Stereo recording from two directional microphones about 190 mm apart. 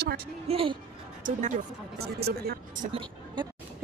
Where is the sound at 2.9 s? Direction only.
25° right (ahead or behind).